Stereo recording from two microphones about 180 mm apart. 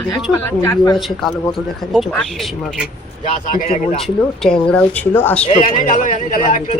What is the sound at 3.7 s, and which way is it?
Speech, 35° left (ahead or behind).